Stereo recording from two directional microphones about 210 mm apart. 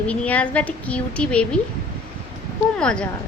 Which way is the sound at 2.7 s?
5° left (ahead or behind).